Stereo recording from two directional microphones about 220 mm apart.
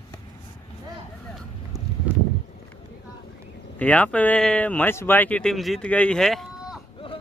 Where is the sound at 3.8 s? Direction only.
5° left (ahead or behind).